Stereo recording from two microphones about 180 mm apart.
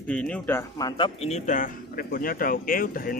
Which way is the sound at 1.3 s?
45° left (ahead or behind).